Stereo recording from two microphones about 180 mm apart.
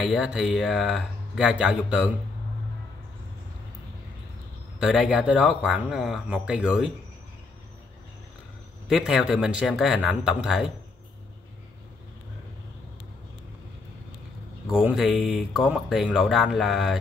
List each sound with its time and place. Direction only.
0.0 s speech: centre (ahead or behind)
4.7 s speech: 5° right (ahead or behind)
8.8 s speech: 5° right (ahead or behind)
14.7 s speech: centre (ahead or behind)